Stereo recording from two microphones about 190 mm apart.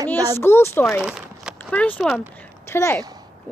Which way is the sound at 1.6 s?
10° left (ahead or behind).